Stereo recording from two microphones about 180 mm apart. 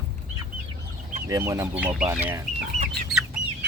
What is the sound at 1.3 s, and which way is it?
Speech, 20° right (ahead or behind).